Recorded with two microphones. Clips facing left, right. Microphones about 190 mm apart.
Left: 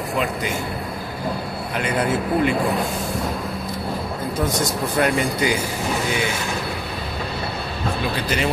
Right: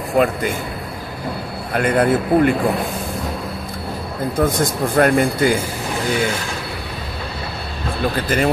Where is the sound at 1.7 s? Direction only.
55° right (ahead or behind).